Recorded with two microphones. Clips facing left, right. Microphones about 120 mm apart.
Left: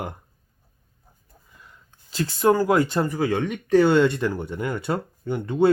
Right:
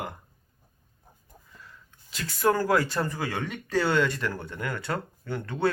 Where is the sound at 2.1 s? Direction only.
30° left (ahead or behind).